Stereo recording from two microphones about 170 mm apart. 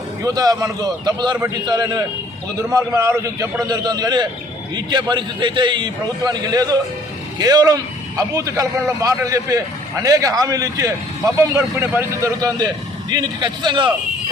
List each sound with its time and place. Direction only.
0.2 s a man's voice: 20° right (ahead or behind)